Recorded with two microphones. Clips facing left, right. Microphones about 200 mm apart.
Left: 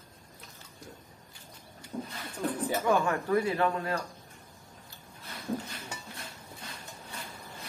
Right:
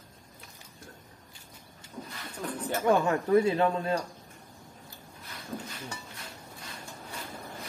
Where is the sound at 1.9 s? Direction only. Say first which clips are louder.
Left 5 dB; 40° left (ahead or behind).